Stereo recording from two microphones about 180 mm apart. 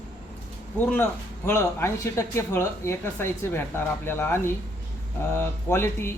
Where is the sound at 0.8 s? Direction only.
10° left (ahead or behind).